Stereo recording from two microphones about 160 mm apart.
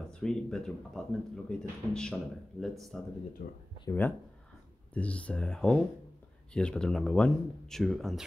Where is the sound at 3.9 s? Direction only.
15° left (ahead or behind).